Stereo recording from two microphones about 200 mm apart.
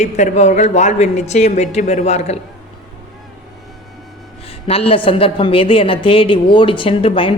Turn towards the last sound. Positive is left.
turn(degrees=25)  # may be behind; listen again after turning